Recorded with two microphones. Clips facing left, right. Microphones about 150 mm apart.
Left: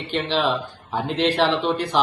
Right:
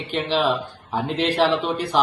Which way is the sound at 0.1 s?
5° right (ahead or behind).